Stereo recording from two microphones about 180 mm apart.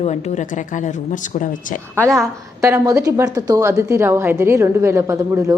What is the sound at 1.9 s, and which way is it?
Speech, 5° left (ahead or behind).